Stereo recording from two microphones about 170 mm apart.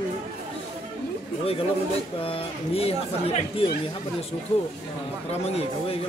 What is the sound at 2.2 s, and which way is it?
Speech, 35° left (ahead or behind).